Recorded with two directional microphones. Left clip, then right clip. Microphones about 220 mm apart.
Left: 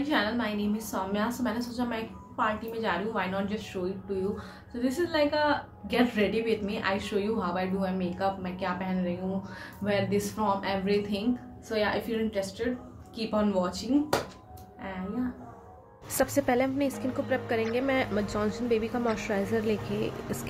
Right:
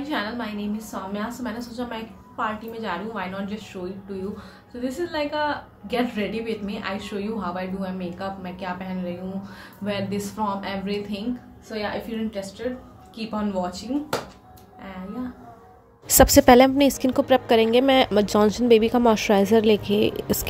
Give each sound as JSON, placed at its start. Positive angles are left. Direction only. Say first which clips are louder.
{"t": 0.1, "sound": "a woman's voice", "louder": "even", "side_deg": 5}
{"t": 4.8, "sound": "a woman's voice", "louder": "even", "side_deg": 5}
{"t": 16.2, "sound": "a woman's voice", "louder": "right 13 dB", "side_deg": -40}